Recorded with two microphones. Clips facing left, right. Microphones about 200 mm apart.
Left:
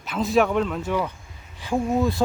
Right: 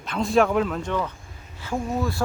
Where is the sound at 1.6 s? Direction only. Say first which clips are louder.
Left 4 dB; 20° left (ahead or behind).